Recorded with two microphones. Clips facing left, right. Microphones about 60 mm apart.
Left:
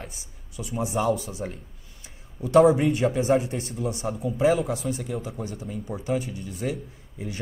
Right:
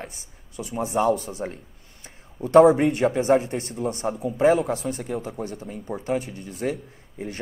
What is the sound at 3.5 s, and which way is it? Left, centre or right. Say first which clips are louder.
A man's voice: right 2 dB; right.